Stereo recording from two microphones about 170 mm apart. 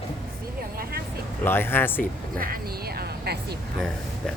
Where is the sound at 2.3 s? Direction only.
60° right (ahead or behind).